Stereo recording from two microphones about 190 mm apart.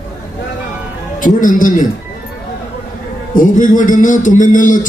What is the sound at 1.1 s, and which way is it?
Speech, 45° left (ahead or behind).